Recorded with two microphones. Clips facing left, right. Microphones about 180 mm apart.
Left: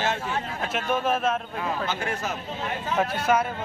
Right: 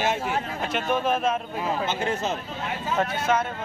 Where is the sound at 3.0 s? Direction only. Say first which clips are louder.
Left 1 dB; 10° left (ahead or behind).